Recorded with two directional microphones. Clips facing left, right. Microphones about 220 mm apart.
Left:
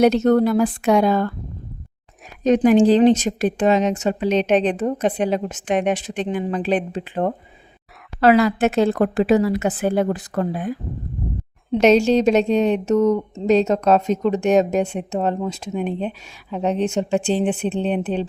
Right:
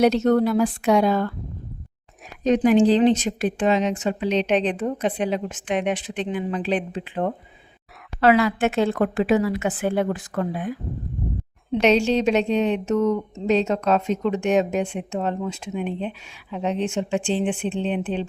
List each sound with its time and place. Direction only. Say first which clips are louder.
0.0 s speech: left 3 dB; 50° left (ahead or behind)
2.4 s a woman's voice: left 3 dB; 45° left (ahead or behind)
11.8 s a woman's voice: left 4 dB; 45° left (ahead or behind)